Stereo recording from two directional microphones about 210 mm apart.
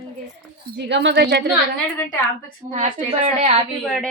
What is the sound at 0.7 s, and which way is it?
Speech, 55° right (ahead or behind).